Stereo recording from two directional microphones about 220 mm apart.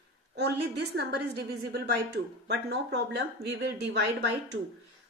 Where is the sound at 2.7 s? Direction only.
50° right (ahead or behind).